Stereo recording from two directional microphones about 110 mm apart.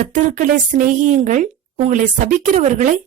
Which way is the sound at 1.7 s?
90° right.